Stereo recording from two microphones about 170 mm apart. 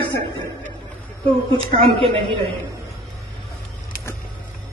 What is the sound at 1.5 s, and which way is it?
Speech, 30° right (ahead or behind).